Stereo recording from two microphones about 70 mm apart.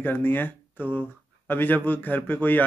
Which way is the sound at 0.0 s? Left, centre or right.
Left.